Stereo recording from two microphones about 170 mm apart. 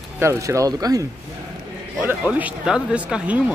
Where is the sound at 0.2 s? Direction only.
15° right (ahead or behind).